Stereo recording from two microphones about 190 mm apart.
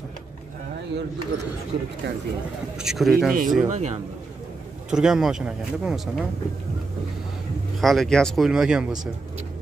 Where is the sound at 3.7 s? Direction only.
40° right (ahead or behind).